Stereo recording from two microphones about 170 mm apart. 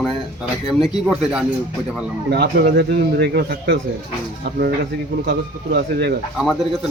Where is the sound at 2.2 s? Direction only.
80° right.